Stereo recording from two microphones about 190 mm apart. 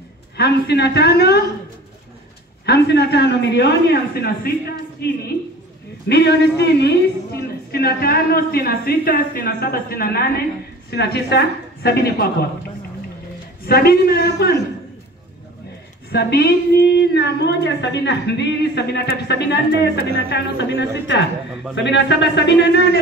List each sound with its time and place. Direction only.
0.4 s a woman's voice: 60° left (ahead or behind)
2.6 s a woman's voice: 60° left (ahead or behind)
13.7 s a woman's voice: 55° left (ahead or behind)
16.1 s a woman's voice: 60° left (ahead or behind)